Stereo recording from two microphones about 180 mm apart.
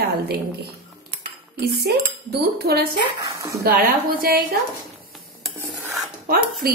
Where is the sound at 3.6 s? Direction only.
55° right (ahead or behind).